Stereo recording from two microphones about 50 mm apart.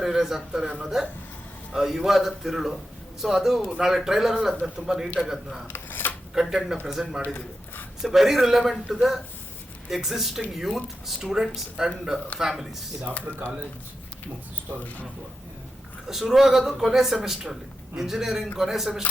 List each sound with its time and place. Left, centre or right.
0.0 s a man's voice: centre
1.7 s a man's voice: centre
5.6 s scissors: left
6.3 s a man's voice: centre
13.3 s speech: right
14.7 s speech: right
16.0 s a man's voice: centre